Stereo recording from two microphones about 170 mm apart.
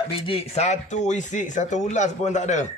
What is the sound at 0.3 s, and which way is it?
Speech, 35° left (ahead or behind).